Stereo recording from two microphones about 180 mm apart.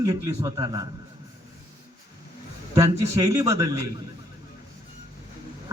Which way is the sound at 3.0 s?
20° right (ahead or behind).